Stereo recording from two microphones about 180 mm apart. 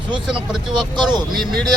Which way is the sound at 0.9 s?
25° right (ahead or behind).